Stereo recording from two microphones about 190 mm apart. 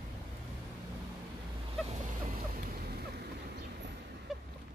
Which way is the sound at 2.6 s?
55° right (ahead or behind).